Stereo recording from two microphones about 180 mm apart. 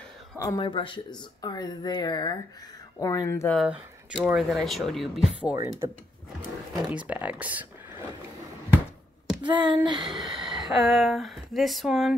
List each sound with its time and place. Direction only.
0.4 s speech: 20° left (ahead or behind)
3.5 s speech: 5° right (ahead or behind)
6.9 s speech: 5° right (ahead or behind)
9.4 s a sound: 25° right (ahead or behind)
10.1 s speech: centre (ahead or behind)